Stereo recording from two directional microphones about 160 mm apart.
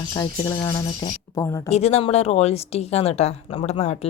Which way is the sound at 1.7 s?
40° left (ahead or behind).